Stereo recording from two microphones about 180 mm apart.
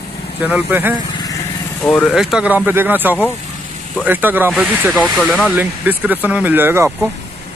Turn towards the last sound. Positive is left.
turn(degrees=-10)  # may be behind; listen again after turning